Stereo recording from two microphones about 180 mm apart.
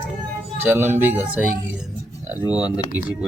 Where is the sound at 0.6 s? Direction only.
10° right (ahead or behind).